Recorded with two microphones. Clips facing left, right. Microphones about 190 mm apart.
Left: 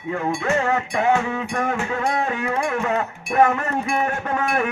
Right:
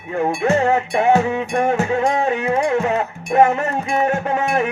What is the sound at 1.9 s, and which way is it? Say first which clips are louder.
Music: right 5 dB; 30° right (ahead or behind).